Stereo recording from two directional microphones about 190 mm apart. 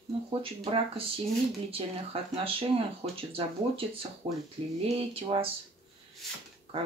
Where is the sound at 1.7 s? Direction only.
30° right (ahead or behind).